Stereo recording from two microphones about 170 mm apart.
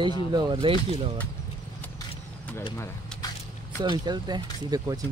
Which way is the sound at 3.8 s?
25° right (ahead or behind).